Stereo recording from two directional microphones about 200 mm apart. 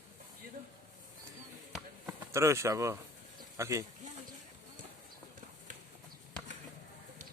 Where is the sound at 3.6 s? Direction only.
15° right (ahead or behind).